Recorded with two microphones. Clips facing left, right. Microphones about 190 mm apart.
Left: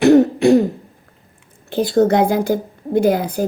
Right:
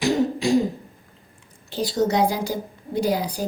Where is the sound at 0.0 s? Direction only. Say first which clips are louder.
Left 10 dB; 65° left (ahead or behind).